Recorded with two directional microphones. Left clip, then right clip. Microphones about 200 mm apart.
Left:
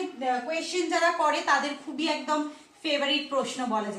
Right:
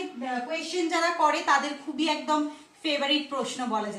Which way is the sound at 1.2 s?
15° left (ahead or behind).